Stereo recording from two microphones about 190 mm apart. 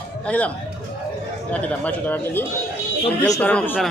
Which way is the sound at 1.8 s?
10° left (ahead or behind).